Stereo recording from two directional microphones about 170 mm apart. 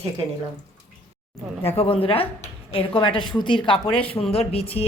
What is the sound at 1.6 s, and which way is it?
A woman's voice, 35° left (ahead or behind).